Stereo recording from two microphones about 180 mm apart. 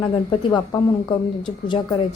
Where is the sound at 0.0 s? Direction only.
25° left (ahead or behind).